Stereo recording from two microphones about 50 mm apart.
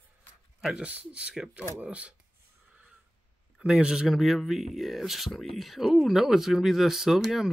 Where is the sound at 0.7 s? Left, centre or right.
Right.